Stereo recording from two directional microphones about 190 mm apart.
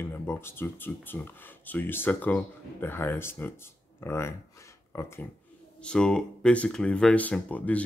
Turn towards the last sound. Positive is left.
turn(degrees=10)  # may be behind; listen again after turning